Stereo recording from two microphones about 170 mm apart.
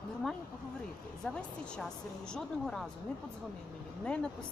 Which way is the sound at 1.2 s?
5° left (ahead or behind).